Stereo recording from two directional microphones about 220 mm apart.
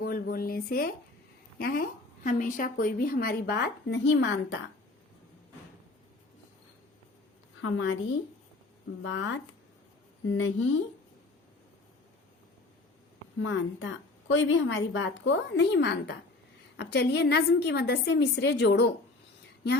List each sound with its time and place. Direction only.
0.0 s a sound: 40° left (ahead or behind)
1.5 s a woman's voice: 40° left (ahead or behind)
7.6 s a woman's voice: 65° left (ahead or behind)
9.0 s a woman's voice: 65° left (ahead or behind)
13.4 s a woman's voice: 60° left (ahead or behind)